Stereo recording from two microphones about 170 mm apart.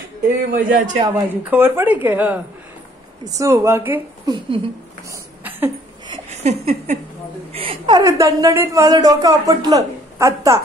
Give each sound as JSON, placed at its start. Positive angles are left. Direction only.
{"t": 0.2, "sound": "a man's voice", "side_deg": -50}
{"t": 1.0, "sound": "a woman's voice", "side_deg": -15}
{"t": 4.3, "sound": "a woman's voice", "side_deg": -25}
{"t": 6.3, "sound": "a sound", "side_deg": -40}
{"t": 7.5, "sound": "a woman's voice", "side_deg": -35}